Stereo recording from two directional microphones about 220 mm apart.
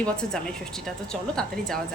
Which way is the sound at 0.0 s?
5° left (ahead or behind).